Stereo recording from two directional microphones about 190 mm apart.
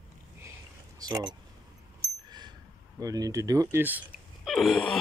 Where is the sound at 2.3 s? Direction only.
20° right (ahead or behind).